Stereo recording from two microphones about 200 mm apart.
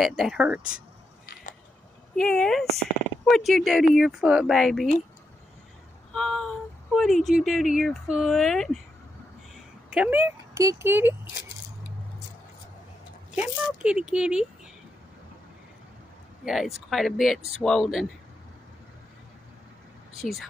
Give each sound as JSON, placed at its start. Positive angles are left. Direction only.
{"t": 0.0, "sound": "speech", "side_deg": 0}
{"t": 2.1, "sound": "speech", "side_deg": 5}
{"t": 6.1, "sound": "speech", "side_deg": 0}
{"t": 9.8, "sound": "speech", "side_deg": -5}
{"t": 13.8, "sound": "speech", "side_deg": -5}
{"t": 16.4, "sound": "speech", "side_deg": 0}
{"t": 20.2, "sound": "speech", "side_deg": 0}